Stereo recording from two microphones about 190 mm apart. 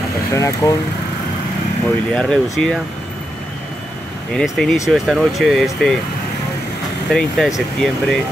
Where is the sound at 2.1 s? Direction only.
Centre (ahead or behind).